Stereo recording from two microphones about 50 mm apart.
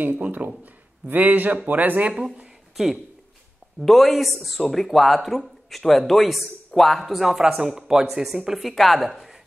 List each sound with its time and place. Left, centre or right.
0.0 s a man's voice: right
3.8 s speech: centre